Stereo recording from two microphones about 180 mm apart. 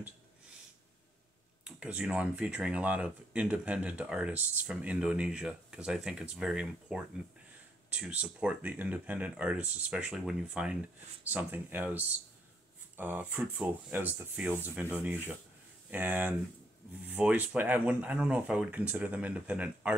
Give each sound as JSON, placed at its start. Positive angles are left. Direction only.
{"t": 1.6, "sound": "speech", "side_deg": -5}